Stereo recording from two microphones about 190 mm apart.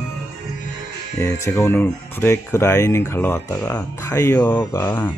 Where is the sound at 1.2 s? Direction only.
15° left (ahead or behind).